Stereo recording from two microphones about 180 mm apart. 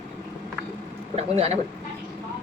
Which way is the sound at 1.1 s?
35° right (ahead or behind).